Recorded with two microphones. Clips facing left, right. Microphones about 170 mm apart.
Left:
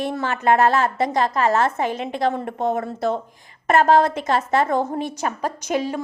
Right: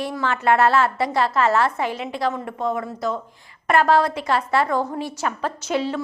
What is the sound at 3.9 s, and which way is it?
A woman's voice, 20° left (ahead or behind).